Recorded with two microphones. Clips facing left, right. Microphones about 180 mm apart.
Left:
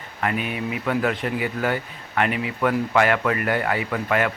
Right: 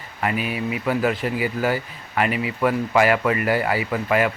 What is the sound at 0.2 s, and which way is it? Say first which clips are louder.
A man's voice: right 1 dB; 5° right (ahead or behind).